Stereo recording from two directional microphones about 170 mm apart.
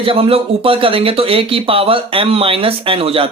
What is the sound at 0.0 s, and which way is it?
Speech, 35° right (ahead or behind).